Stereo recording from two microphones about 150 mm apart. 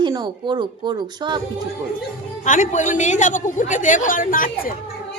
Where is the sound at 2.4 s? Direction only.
55° left (ahead or behind).